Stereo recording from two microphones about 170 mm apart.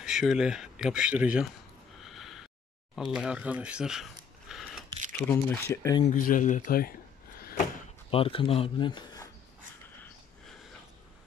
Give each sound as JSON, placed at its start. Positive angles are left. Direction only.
{"t": 0.0, "sound": "speech", "side_deg": 0}
{"t": 2.0, "sound": "a sound", "side_deg": 0}
{"t": 3.0, "sound": "speech", "side_deg": -5}
{"t": 4.5, "sound": "scissors", "side_deg": 0}
{"t": 5.3, "sound": "speech", "side_deg": 10}
{"t": 6.0, "sound": "speech", "side_deg": 50}
{"t": 7.3, "sound": "a sound", "side_deg": 60}
{"t": 8.1, "sound": "speech", "side_deg": 35}